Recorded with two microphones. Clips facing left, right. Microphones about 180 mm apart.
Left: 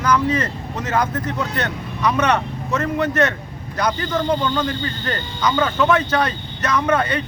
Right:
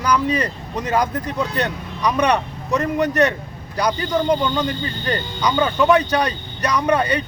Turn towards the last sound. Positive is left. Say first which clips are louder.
# right 1 dB
turn(degrees=-15)  # may be behind; listen again after turning